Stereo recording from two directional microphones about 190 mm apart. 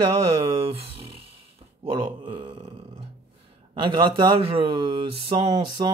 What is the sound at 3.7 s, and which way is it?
Speech, 25° right (ahead or behind).